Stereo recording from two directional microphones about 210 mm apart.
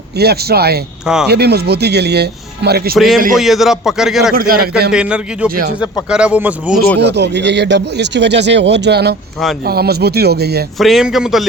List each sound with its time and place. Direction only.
0.2 s speech: 50° right (ahead or behind)
1.0 s a man's voice: 5° right (ahead or behind)
1.3 s speech: 50° right (ahead or behind)
2.9 s a man's voice: centre (ahead or behind)
4.4 s speech: 45° right (ahead or behind)
4.9 s a man's voice: 5° right (ahead or behind)
7.0 s speech: 55° right (ahead or behind)
10.8 s a man's voice: centre (ahead or behind)